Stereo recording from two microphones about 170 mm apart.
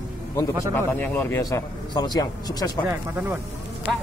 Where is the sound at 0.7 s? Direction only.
10° left (ahead or behind).